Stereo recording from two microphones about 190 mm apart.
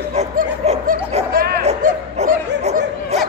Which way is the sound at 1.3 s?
50° right (ahead or behind).